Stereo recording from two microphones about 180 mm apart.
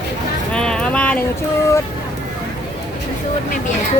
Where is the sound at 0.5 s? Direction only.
5° left (ahead or behind).